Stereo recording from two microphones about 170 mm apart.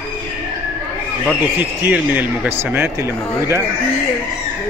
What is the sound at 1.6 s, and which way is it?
Speech, 10° right (ahead or behind).